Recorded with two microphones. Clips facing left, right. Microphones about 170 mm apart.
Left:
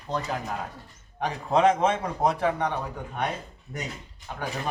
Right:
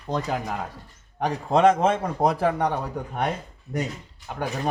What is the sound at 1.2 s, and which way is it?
Speech, 40° right (ahead or behind).